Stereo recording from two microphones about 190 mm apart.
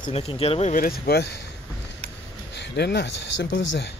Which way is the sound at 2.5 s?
60° left (ahead or behind).